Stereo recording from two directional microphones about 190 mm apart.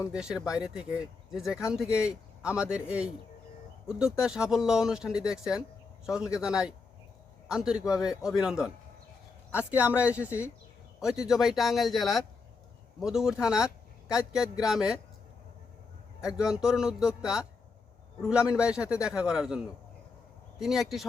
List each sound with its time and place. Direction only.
0.1 s a man's voice: 5° right (ahead or behind)
16.2 s speech: 5° right (ahead or behind)